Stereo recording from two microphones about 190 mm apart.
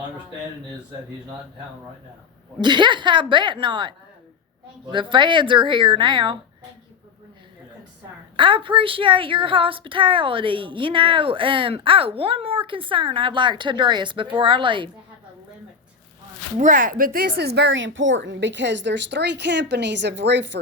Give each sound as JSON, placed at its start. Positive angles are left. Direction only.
{"t": 2.6, "sound": "a woman's voice", "side_deg": -25}
{"t": 8.4, "sound": "a woman's voice", "side_deg": -25}
{"t": 16.6, "sound": "speech", "side_deg": -40}